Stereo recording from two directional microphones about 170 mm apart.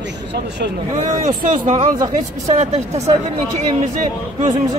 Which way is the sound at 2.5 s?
40° right (ahead or behind).